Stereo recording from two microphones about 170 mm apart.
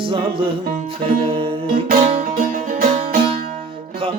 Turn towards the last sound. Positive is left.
turn(degrees=-55)  # may be behind; listen again after turning